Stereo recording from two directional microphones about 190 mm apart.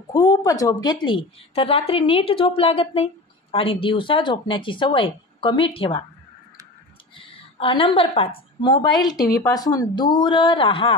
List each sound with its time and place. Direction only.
0.1 s a woman's voice: 20° left (ahead or behind)
7.2 s a woman's voice: 30° left (ahead or behind)